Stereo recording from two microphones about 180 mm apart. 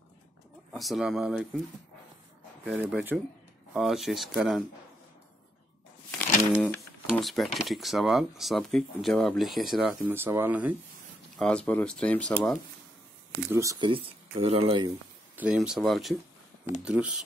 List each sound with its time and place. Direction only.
0.7 s speech: centre (ahead or behind)
2.6 s speech: 10° right (ahead or behind)
6.1 s speech: 10° left (ahead or behind); by 10.8 s 10° right (ahead or behind)
11.3 s speech: 5° left (ahead or behind)
13.5 s speech: 15° right (ahead or behind)
15.3 s speech: 5° right (ahead or behind)